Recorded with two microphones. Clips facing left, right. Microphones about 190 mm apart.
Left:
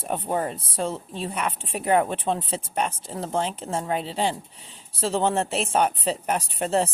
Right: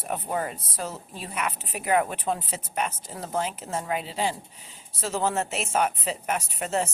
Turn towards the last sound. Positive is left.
turn(degrees=35)  # may be behind; listen again after turning